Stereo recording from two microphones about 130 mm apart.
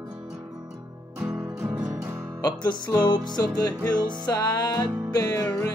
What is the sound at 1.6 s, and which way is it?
Music, 25° right (ahead or behind).